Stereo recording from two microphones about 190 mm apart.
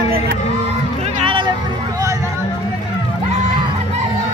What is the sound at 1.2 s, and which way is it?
Music, 25° right (ahead or behind).